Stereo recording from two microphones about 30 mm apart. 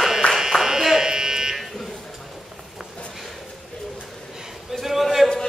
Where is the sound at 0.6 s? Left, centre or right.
Centre.